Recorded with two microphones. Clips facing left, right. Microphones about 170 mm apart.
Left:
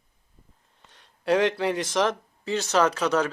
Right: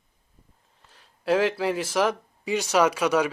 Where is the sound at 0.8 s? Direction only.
5° right (ahead or behind).